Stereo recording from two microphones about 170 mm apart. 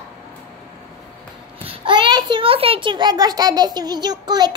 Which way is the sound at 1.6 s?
30° right (ahead or behind).